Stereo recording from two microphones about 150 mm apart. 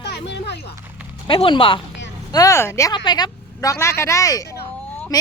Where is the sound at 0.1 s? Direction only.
90° left.